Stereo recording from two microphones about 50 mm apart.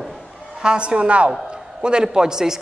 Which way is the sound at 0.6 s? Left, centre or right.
Right.